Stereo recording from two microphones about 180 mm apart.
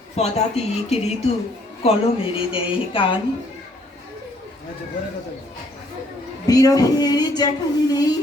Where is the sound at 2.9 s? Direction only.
30° left (ahead or behind).